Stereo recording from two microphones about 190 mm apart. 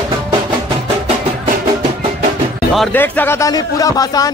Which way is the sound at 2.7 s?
5° left (ahead or behind).